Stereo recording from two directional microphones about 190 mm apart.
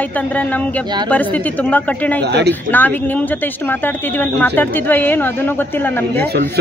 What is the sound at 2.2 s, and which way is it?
Speech, 60° right (ahead or behind).